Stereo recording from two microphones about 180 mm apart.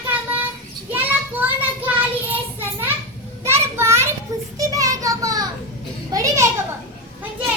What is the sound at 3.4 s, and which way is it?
Child singing, 15° right (ahead or behind).